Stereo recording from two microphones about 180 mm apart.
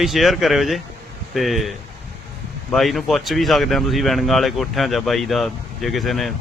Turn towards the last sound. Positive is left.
turn(degrees=0)  # may be behind; listen again after turning